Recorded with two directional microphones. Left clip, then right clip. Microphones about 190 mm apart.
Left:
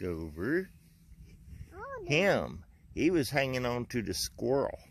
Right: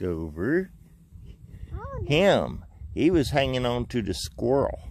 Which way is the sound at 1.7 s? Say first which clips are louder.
Right 3 dB; 25° left (ahead or behind).